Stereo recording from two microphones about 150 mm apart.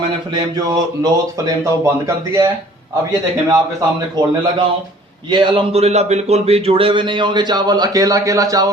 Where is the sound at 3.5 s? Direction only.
20° right (ahead or behind).